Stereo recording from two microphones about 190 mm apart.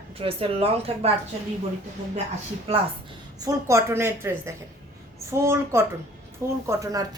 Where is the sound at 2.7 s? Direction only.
30° right (ahead or behind).